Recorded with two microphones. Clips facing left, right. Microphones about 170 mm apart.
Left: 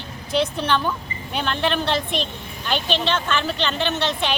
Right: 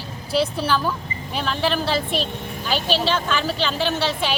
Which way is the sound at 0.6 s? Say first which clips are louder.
Even; 5° right (ahead or behind).